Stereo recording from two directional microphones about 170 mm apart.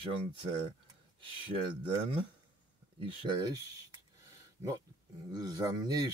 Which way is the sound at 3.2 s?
25° right (ahead or behind).